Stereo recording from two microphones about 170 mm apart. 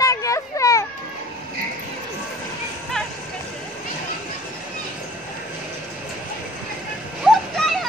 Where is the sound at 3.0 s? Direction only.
5° left (ahead or behind).